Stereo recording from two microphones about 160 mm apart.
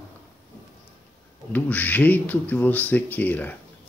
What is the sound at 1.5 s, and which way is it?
Speech, 10° left (ahead or behind).